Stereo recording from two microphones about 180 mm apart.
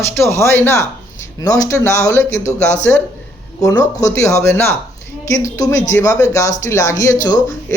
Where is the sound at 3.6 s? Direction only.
20° left (ahead or behind).